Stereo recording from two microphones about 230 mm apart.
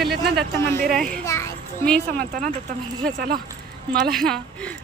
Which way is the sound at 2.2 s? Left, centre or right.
Right.